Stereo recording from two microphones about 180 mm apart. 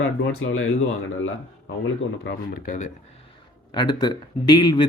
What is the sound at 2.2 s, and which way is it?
Speech, 55° left (ahead or behind).